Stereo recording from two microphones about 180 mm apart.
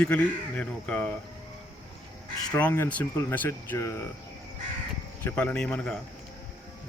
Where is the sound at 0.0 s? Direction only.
10° left (ahead or behind).